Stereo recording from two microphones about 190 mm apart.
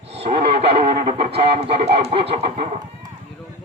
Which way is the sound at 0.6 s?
30° right (ahead or behind).